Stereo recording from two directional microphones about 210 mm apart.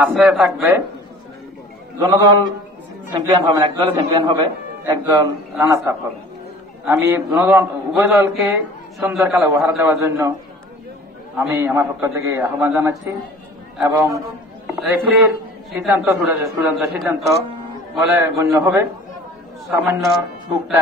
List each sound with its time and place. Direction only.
0.0 s a man's voice: 5° right (ahead or behind)
2.0 s a man's voice: 15° right (ahead or behind)
11.3 s a man's voice: 10° right (ahead or behind)
14.8 s a man's voice: centre (ahead or behind)
17.9 s a man's voice: 10° right (ahead or behind)